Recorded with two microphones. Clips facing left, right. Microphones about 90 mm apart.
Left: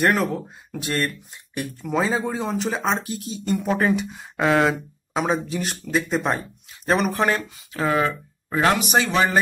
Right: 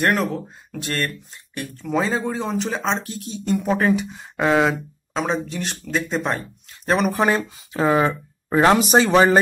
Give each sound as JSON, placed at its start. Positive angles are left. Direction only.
{"t": 0.0, "sound": "speech", "side_deg": 0}
{"t": 7.2, "sound": "speech", "side_deg": -20}